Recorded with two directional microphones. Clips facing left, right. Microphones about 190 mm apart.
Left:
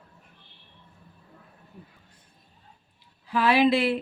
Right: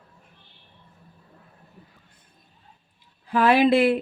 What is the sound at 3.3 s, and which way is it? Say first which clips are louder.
Speech: right 3 dB; 50° right (ahead or behind).